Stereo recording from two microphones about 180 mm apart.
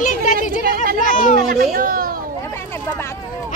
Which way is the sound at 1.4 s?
55° right (ahead or behind).